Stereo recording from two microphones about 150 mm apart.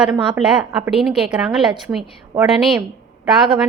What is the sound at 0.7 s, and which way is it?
Speech, 15° right (ahead or behind).